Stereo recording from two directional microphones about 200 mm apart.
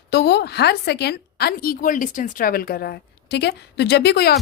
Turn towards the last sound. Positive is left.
turn(degrees=55)  # may be behind; listen again after turning